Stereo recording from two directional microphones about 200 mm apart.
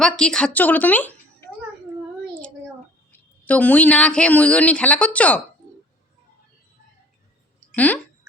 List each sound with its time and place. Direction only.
0.0 s a woman's voice: 5° left (ahead or behind)
3.1 s speech: 5° left (ahead or behind)
7.7 s speech: 5° left (ahead or behind)